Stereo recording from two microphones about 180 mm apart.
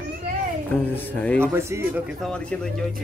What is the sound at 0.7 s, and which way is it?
Speech, 10° left (ahead or behind).